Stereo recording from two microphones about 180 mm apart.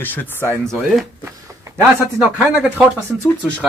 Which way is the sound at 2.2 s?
5° right (ahead or behind).